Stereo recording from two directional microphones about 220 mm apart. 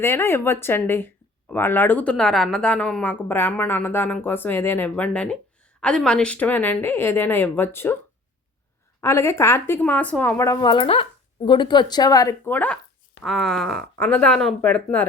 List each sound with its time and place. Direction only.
0.0 s speech: 10° left (ahead or behind)
9.0 s speech: 10° left (ahead or behind)